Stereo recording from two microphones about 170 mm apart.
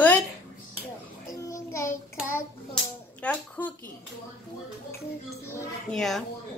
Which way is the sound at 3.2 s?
10° left (ahead or behind).